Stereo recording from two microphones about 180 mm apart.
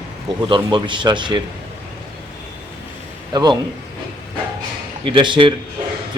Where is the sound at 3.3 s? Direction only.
20° right (ahead or behind).